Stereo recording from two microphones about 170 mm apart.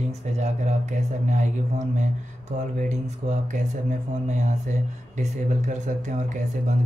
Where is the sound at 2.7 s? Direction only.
45° right (ahead or behind).